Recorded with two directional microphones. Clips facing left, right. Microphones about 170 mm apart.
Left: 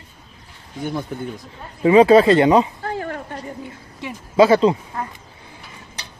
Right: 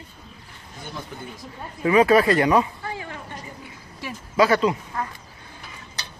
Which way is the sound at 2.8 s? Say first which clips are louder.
Left 7 dB; 55° left (ahead or behind).